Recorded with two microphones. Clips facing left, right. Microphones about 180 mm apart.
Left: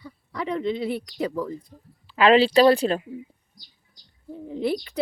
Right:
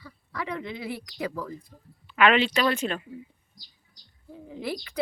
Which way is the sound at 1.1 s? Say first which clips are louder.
Left 5 dB; 25° left (ahead or behind).